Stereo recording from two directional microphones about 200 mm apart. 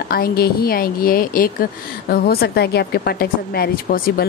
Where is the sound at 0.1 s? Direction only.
50° left (ahead or behind).